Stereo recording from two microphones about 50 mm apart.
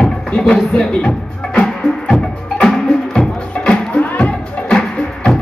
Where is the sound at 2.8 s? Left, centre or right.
Centre.